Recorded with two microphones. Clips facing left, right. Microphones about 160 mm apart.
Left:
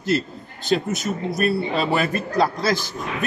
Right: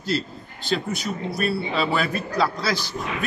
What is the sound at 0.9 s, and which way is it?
A man's voice, 45° left (ahead or behind).